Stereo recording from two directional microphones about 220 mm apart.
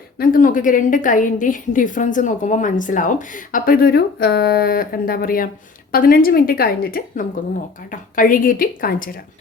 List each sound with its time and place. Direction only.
0.2 s a woman's voice: 40° left (ahead or behind)